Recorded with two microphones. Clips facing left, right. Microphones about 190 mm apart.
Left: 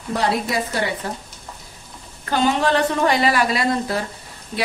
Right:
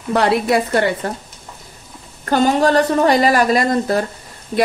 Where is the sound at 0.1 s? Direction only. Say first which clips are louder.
Right 6 dB; 65° right (ahead or behind).